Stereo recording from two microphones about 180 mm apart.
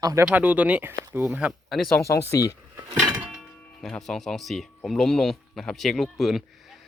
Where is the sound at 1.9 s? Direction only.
15° left (ahead or behind).